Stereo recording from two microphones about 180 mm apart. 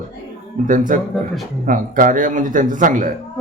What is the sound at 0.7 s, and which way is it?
A man's voice, 50° right (ahead or behind).